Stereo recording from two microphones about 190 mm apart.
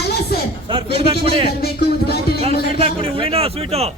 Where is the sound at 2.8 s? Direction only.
30° right (ahead or behind).